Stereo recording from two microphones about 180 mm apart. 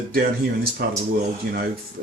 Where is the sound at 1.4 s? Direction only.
50° right (ahead or behind).